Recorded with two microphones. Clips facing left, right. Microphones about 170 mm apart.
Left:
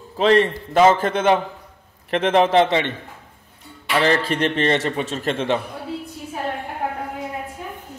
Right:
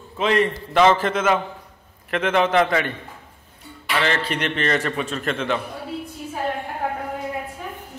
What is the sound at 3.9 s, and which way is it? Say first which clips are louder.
A man's voice: left 4 dB; 35° left (ahead or behind).